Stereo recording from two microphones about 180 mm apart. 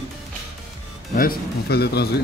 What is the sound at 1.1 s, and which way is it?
Speech, 55° left (ahead or behind).